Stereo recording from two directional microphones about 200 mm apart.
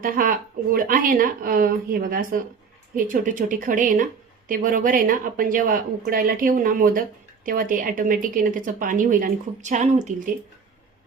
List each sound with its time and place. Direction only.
0.0 s a woman's voice: 45° right (ahead or behind)